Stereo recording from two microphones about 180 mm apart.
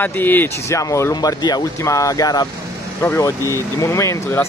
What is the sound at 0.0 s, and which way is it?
Speech, 10° left (ahead or behind).